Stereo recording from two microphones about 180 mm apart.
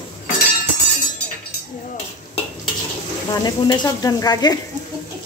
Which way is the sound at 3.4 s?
25° left (ahead or behind).